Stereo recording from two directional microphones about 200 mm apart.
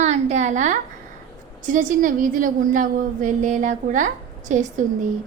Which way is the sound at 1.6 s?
40° right (ahead or behind).